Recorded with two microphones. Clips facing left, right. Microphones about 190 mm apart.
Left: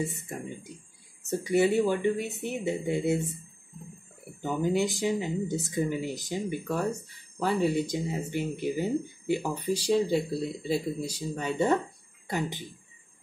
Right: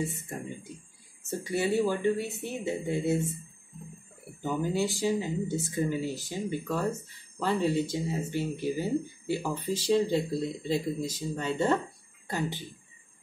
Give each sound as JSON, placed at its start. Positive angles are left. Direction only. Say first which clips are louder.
{"t": 1.4, "sound": "speech", "louder": "left 3 dB", "side_deg": 15}
{"t": 4.4, "sound": "speech", "louder": "left 2 dB", "side_deg": 20}